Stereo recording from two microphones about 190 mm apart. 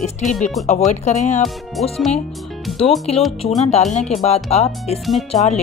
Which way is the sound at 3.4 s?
35° left (ahead or behind).